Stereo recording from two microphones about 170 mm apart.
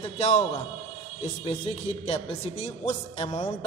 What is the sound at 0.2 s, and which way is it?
A man's voice, 40° left (ahead or behind).